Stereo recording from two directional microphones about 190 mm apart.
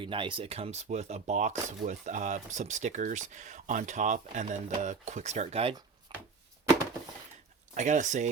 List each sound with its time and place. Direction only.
0.0 s speech: 25° right (ahead or behind)
6.1 s chopping: 25° right (ahead or behind)
7.7 s speech: 40° right (ahead or behind)